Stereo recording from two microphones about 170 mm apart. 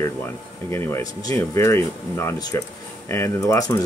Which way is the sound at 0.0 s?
15° left (ahead or behind).